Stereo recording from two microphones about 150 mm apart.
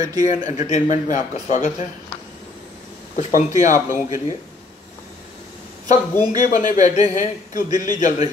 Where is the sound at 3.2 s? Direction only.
55° left (ahead or behind).